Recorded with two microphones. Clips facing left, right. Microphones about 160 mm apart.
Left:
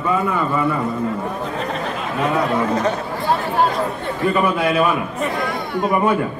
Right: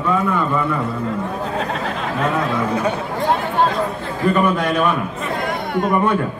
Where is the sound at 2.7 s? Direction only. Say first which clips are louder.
Left 1 dB; 10° right (ahead or behind).